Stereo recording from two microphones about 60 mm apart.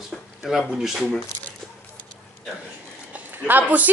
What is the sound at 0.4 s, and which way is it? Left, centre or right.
Speech, centre.